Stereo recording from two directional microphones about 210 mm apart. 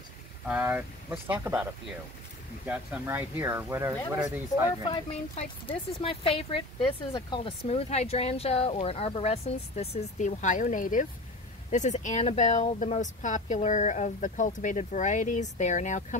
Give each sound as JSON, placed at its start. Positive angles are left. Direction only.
{"t": 0.5, "sound": "speech", "side_deg": -5}
{"t": 4.6, "sound": "speech", "side_deg": 25}